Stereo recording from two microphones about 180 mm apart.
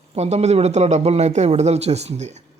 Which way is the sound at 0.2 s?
35° right (ahead or behind).